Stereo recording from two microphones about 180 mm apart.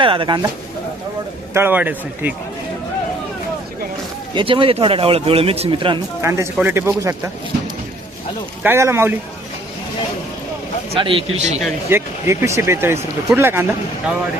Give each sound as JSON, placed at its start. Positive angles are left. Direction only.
{"t": 0.0, "sound": "speech", "side_deg": -30}
{"t": 1.5, "sound": "speech", "side_deg": -10}
{"t": 4.4, "sound": "a man's voice", "side_deg": -30}
{"t": 6.2, "sound": "speech", "side_deg": -15}
{"t": 8.6, "sound": "speech", "side_deg": -15}
{"t": 10.9, "sound": "a man's voice", "side_deg": -30}
{"t": 11.9, "sound": "speech", "side_deg": -15}